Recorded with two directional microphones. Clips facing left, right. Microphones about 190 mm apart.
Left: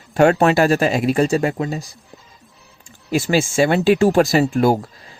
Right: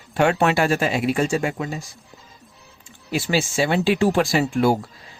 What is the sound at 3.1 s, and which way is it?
Speech, 45° left (ahead or behind).